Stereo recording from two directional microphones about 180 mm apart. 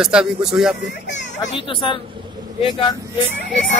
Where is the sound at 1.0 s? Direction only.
80° left.